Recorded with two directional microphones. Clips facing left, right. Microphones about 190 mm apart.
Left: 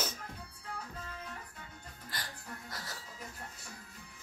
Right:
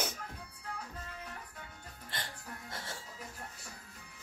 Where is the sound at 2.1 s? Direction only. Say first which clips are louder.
Right 1 dB; 25° right (ahead or behind).